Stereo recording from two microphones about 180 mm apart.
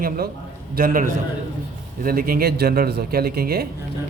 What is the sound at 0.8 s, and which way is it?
A man's voice, 50° right (ahead or behind).